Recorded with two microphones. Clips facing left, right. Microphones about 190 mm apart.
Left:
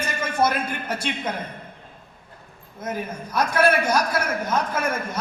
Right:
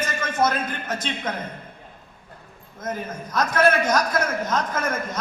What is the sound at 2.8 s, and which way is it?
A man's voice, 10° left (ahead or behind).